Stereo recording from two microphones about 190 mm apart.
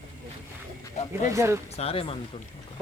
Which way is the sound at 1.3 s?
15° right (ahead or behind).